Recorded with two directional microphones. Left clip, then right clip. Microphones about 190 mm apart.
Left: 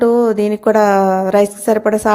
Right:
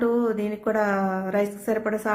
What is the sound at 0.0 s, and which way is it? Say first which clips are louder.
A woman's voice: left 11 dB; 35° left (ahead or behind).